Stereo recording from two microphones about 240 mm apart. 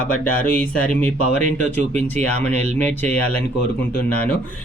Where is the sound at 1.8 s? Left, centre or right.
Right.